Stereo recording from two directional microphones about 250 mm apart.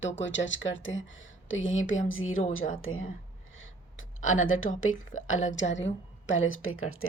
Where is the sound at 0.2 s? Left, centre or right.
Left.